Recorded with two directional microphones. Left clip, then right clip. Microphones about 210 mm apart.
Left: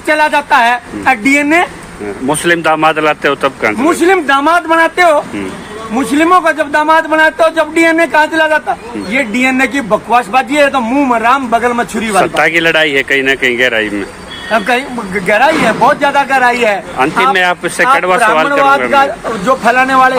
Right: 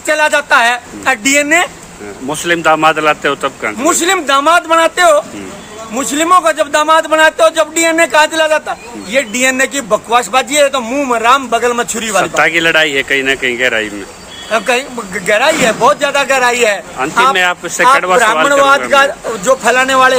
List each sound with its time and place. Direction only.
0.1 s a man's voice: 20° right (ahead or behind)
2.2 s speech: centre (ahead or behind)
3.8 s a man's voice: 20° right (ahead or behind)
12.2 s speech: 5° left (ahead or behind)
14.5 s a man's voice: 25° right (ahead or behind)
17.3 s speech: 5° left (ahead or behind)
18.9 s a man's voice: 25° right (ahead or behind)